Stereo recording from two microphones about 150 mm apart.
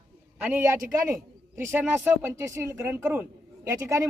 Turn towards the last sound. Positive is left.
turn(degrees=-20)  # may be behind; listen again after turning